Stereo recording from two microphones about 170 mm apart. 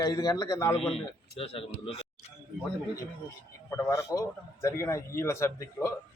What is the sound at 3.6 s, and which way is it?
Speech, 15° left (ahead or behind).